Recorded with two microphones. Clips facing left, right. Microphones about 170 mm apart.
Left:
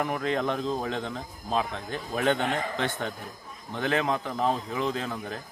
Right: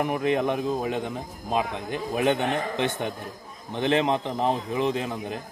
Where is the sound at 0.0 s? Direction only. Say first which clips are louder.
Right 4 dB; 15° right (ahead or behind).